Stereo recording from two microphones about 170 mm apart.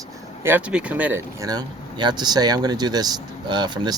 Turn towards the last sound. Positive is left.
turn(degrees=-25)  # may be behind; listen again after turning